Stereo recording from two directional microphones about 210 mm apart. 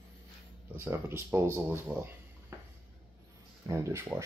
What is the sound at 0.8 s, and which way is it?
Speech, 10° right (ahead or behind).